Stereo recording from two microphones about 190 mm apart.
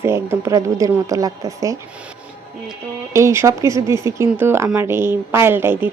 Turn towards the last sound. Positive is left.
turn(degrees=-10)  # may be behind; listen again after turning